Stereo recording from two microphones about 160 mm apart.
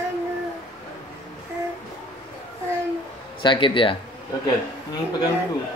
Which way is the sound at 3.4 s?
30° left (ahead or behind).